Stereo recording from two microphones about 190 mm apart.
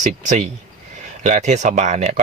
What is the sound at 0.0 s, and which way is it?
Speech, 40° right (ahead or behind).